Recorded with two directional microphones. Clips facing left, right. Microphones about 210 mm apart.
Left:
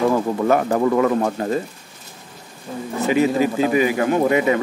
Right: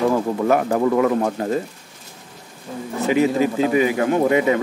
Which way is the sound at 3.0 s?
20° right (ahead or behind).